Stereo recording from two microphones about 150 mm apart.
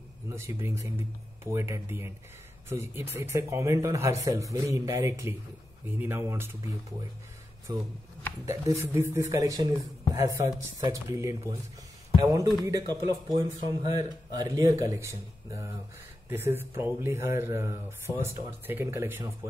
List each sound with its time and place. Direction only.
0.3 s speech: 20° right (ahead or behind)